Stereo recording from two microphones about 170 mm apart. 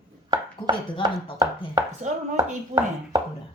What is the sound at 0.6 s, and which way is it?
Speech, 30° left (ahead or behind).